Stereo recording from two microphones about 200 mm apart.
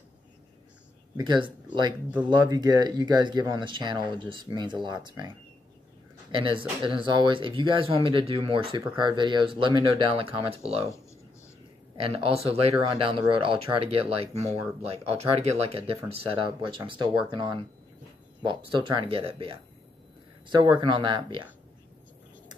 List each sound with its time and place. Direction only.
1.1 s speech: 20° right (ahead or behind)
6.8 s speech: 25° right (ahead or behind)
12.0 s speech: 30° right (ahead or behind)